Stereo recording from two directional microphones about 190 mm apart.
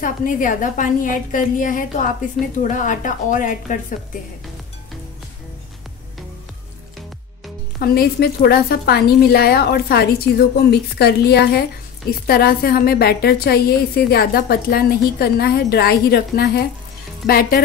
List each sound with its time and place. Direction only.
0.0 s a woman's voice: 45° left (ahead or behind)
7.8 s a woman's voice: 55° left (ahead or behind)